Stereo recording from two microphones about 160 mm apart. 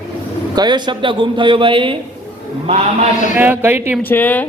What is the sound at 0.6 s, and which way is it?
A man's voice, 30° right (ahead or behind).